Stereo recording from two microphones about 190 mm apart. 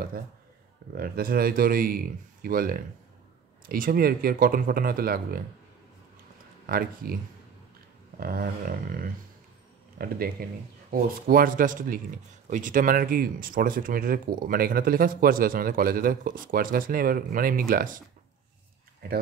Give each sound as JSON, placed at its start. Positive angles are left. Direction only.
{"t": 0.9, "sound": "speech", "side_deg": -50}
{"t": 6.6, "sound": "speech", "side_deg": -50}
{"t": 8.2, "sound": "speech", "side_deg": -50}